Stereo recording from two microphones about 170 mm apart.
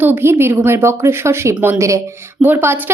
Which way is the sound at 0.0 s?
10° right (ahead or behind).